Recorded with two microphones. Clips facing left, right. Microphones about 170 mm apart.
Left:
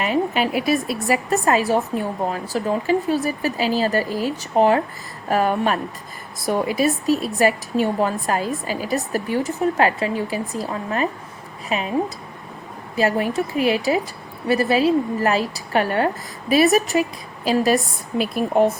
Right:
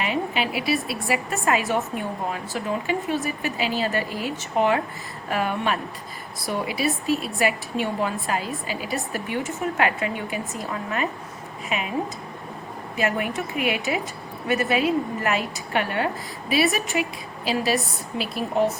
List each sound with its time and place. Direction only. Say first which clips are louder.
0.0 s a woman's voice: left 5 dB; 45° left (ahead or behind)